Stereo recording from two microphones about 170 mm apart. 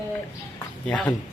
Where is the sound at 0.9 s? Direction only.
10° left (ahead or behind).